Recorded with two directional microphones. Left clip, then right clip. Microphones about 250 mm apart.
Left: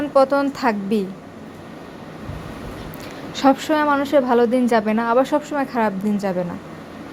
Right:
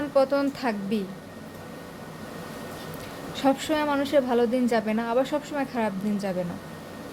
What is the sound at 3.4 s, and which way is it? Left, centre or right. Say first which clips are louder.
A woman's voice: left 7 dB; centre.